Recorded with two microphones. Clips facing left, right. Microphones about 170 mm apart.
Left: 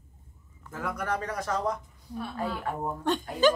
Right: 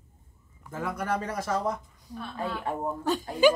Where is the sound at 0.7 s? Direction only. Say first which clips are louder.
Right 3 dB; 10° right (ahead or behind).